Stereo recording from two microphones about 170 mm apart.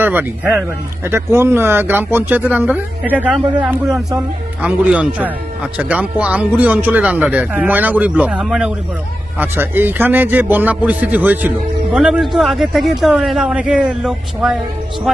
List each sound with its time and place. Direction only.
0.0 s a man's voice: 10° right (ahead or behind)